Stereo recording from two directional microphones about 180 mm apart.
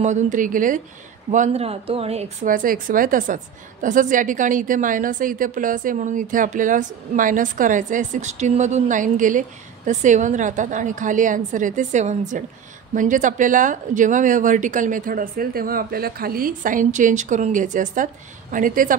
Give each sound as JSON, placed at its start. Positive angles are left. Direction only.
{"t": 0.0, "sound": "a woman's voice", "side_deg": -40}